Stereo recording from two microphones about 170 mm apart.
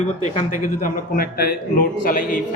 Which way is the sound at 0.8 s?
55° left (ahead or behind).